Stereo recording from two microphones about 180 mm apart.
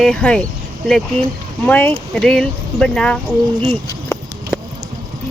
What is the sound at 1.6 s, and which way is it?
Speech, 10° left (ahead or behind).